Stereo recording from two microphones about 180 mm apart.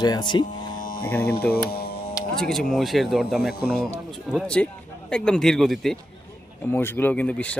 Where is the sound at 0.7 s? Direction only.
50° left (ahead or behind).